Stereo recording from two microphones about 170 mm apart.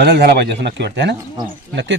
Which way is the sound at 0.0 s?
70° right (ahead or behind).